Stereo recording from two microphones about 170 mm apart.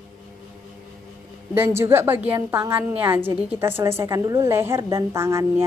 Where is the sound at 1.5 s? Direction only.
15° right (ahead or behind).